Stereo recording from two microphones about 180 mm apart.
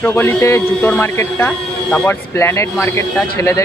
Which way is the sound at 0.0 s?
15° left (ahead or behind).